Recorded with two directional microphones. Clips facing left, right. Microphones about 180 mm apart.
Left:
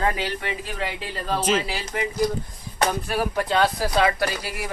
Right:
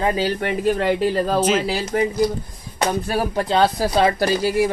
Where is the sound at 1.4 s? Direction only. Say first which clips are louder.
Even; centre (ahead or behind).